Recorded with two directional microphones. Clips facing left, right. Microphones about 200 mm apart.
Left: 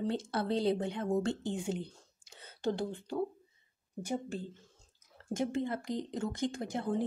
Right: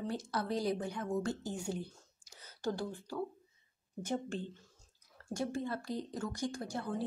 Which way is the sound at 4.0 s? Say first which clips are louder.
Left 1 dB; 10° left (ahead or behind).